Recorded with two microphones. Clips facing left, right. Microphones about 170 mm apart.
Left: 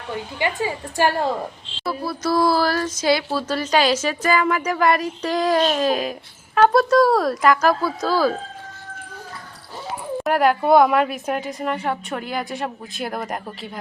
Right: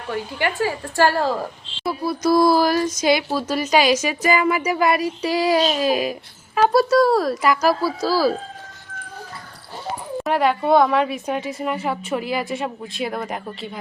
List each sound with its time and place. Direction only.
0.3 s a woman's voice: 20° left (ahead or behind)
1.8 s a woman's voice: 15° right (ahead or behind)
10.2 s a woman's voice: centre (ahead or behind)